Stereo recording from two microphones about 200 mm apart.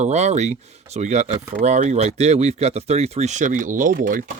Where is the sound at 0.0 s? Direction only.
35° right (ahead or behind).